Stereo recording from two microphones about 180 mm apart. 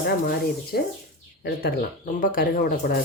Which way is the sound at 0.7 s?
60° left (ahead or behind).